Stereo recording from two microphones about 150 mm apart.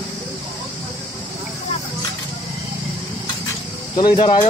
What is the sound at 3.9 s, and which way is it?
Speech, 30° left (ahead or behind).